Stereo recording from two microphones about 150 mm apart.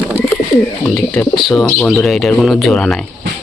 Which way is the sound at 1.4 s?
Centre (ahead or behind).